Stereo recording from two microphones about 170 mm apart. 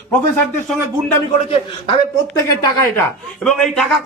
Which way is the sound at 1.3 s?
35° left (ahead or behind).